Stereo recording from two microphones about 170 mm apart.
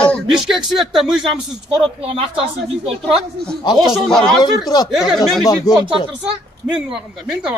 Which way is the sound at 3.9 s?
Centre (ahead or behind).